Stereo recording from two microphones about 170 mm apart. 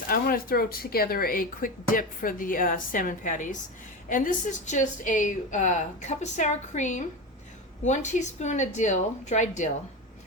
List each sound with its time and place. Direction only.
0.1 s a woman's voice: 60° left (ahead or behind)